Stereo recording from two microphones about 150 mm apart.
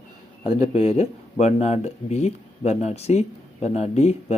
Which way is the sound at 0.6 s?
45° left (ahead or behind).